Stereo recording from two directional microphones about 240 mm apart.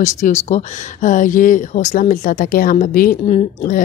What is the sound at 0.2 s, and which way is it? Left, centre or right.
Speech, left.